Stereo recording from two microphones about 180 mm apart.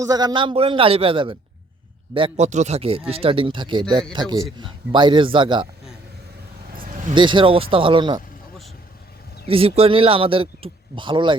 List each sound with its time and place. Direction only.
0.0 s a man's voice: 20° right (ahead or behind)
7.1 s a man's voice: 25° right (ahead or behind)
9.5 s speech: 30° right (ahead or behind)